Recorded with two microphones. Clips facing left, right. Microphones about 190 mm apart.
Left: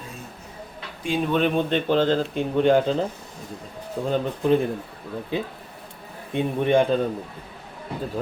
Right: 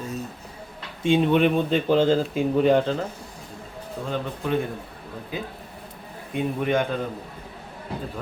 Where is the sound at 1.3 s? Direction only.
10° right (ahead or behind).